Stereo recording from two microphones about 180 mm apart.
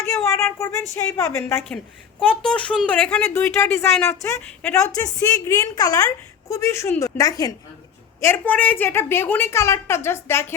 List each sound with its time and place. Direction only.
0.1 s a woman's voice: 15° left (ahead or behind)